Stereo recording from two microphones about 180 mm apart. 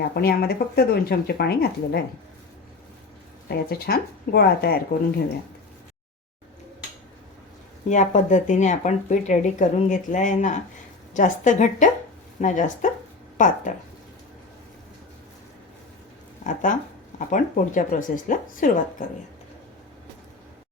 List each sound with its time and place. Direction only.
0.1 s speech: 60° left (ahead or behind)
3.5 s speech: 60° left (ahead or behind)
7.9 s speech: 40° left (ahead or behind)
16.4 s speech: 45° left (ahead or behind)